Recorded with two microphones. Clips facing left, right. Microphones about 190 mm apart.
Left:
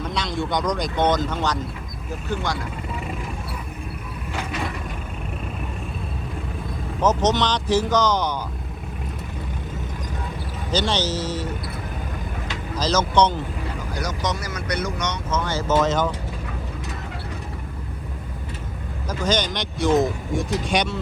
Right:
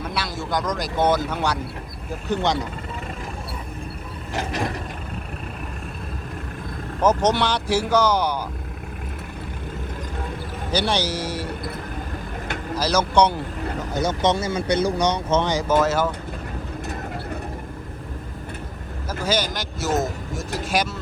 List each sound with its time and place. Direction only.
0.0 s speech: 5° right (ahead or behind)
2.3 s speech: 20° right (ahead or behind)
7.0 s speech: 10° right (ahead or behind)
10.7 s speech: 10° right (ahead or behind)
12.7 s speech: 10° right (ahead or behind)
13.9 s speech: 25° right (ahead or behind)
15.4 s speech: 15° right (ahead or behind)
19.2 s speech: 5° right (ahead or behind)